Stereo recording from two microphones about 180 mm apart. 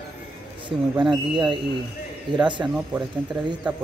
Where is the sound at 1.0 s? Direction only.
25° right (ahead or behind).